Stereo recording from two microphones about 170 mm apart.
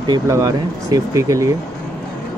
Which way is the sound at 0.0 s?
20° right (ahead or behind).